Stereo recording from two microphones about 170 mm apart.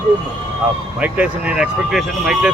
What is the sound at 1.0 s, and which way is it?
Speech, 5° right (ahead or behind).